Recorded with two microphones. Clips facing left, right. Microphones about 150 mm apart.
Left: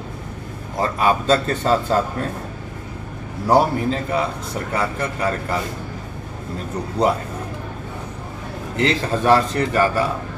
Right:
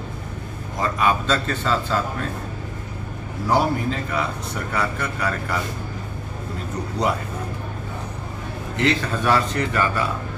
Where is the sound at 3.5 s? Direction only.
35° left (ahead or behind).